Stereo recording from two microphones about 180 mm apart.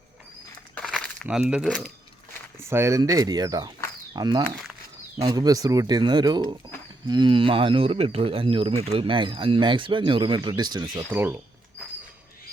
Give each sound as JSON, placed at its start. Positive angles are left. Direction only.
{"t": 0.8, "sound": "crumpling", "side_deg": 5}
{"t": 2.6, "sound": "speech", "side_deg": -15}
{"t": 11.1, "sound": "speech", "side_deg": -10}